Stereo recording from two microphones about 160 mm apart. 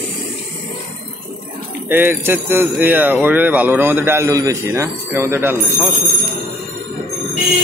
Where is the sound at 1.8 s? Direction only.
15° right (ahead or behind).